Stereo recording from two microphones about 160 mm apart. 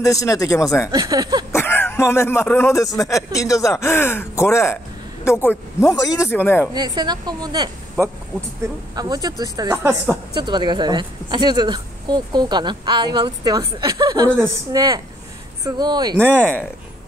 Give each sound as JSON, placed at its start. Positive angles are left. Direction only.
{"t": 0.0, "sound": "speech", "side_deg": 20}
{"t": 0.9, "sound": "a woman's voice", "side_deg": -25}
{"t": 1.5, "sound": "speech", "side_deg": 15}
{"t": 6.7, "sound": "a woman's voice", "side_deg": -25}
{"t": 8.9, "sound": "a woman's voice", "side_deg": -25}
{"t": 16.3, "sound": "speech", "side_deg": 10}